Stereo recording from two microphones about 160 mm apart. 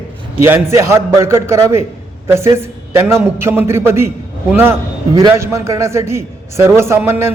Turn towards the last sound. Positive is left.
turn(degrees=-15)  # may be behind; listen again after turning